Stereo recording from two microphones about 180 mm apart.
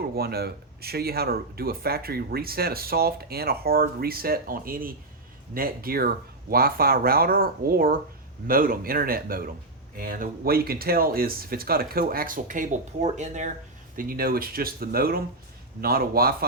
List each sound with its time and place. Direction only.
0.2 s speech: 60° right (ahead or behind); by 13.5 s 40° right (ahead or behind)
13.9 s speech: 50° right (ahead or behind)